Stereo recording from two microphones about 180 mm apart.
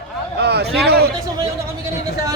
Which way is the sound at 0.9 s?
60° right (ahead or behind).